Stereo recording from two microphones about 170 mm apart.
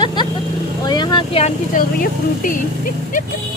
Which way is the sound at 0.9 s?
25° left (ahead or behind).